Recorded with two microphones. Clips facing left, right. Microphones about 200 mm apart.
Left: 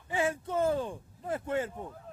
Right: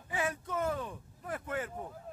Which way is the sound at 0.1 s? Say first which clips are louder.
Left 5 dB; 25° left (ahead or behind).